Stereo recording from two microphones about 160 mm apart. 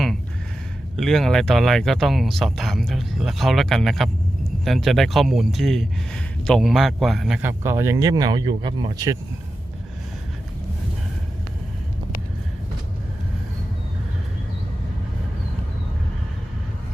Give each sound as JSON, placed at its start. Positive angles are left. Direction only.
{"t": 0.9, "sound": "speech", "side_deg": 0}
{"t": 7.4, "sound": "speech", "side_deg": -15}